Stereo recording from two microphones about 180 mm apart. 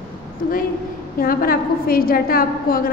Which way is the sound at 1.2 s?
55° left (ahead or behind).